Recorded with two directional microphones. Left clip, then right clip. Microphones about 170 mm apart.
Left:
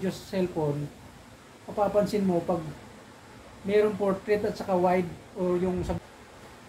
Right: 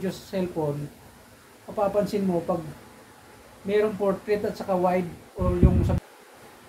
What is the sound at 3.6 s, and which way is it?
Speech, 25° right (ahead or behind).